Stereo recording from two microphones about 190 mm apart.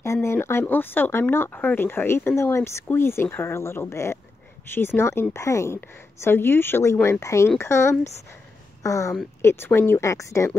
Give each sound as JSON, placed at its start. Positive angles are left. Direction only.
{"t": 0.0, "sound": "speech", "side_deg": 15}